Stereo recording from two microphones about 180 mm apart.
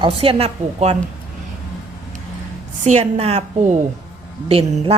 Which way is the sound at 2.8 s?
35° right (ahead or behind).